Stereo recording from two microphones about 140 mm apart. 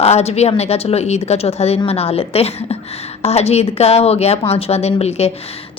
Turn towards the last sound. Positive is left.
turn(degrees=50)  # may be behind; listen again after turning